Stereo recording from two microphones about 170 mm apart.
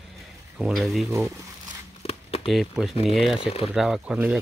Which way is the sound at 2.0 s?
35° left (ahead or behind).